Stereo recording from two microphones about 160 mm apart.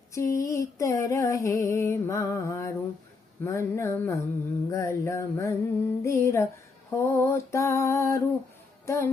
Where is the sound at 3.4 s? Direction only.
15° left (ahead or behind).